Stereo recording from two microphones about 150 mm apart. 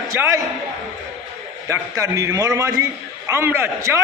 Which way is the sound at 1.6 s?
20° right (ahead or behind).